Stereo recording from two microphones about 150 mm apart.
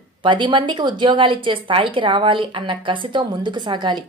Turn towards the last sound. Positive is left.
turn(degrees=-30)  # may be behind; listen again after turning